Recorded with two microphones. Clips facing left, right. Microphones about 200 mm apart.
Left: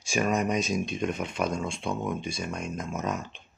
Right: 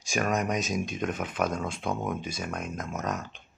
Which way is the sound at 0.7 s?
45° right (ahead or behind).